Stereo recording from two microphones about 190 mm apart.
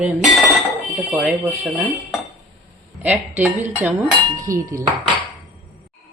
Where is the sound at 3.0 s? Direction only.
10° right (ahead or behind).